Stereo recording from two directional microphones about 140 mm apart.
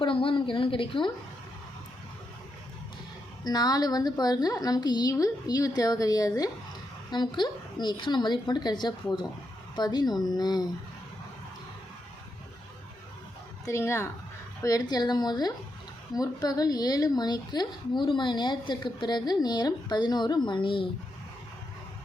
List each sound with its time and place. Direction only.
0.0 s a woman's voice: 40° left (ahead or behind)
3.4 s a woman's voice: 30° left (ahead or behind)
13.7 s a woman's voice: 20° left (ahead or behind); by 20.8 s 35° left (ahead or behind)